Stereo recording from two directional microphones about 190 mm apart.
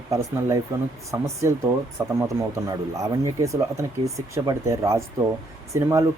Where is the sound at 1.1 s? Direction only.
15° right (ahead or behind).